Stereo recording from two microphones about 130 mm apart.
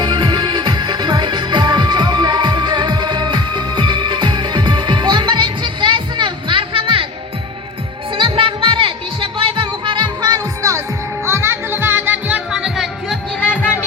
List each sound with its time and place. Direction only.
0.0 s music: 35° right (ahead or behind)
8.1 s music: 40° right (ahead or behind); by 13.1 s centre (ahead or behind)
13.4 s music: 10° left (ahead or behind)